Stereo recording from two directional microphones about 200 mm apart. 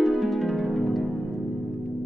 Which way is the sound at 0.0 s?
Centre (ahead or behind).